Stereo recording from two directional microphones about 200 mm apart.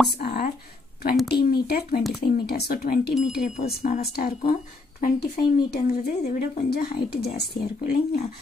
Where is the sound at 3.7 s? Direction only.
50° left (ahead or behind).